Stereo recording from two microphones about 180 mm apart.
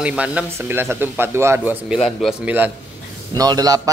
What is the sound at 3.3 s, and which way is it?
Speech, 20° right (ahead or behind).